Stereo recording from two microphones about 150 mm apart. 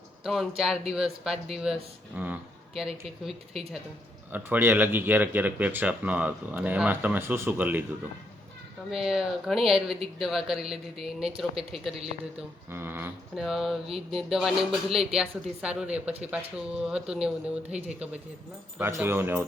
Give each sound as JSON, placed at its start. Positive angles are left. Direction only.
{"t": 0.3, "sound": "speech", "side_deg": 0}
{"t": 4.3, "sound": "speech", "side_deg": -15}
{"t": 8.9, "sound": "speech", "side_deg": -5}
{"t": 12.7, "sound": "speech", "side_deg": -15}
{"t": 13.3, "sound": "speech", "side_deg": 0}